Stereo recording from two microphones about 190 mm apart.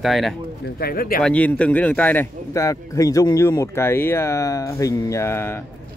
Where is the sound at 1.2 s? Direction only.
5° left (ahead or behind).